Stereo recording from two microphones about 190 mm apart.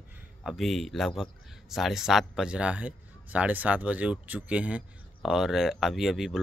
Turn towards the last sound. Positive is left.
turn(degrees=0)  # may be behind; listen again after turning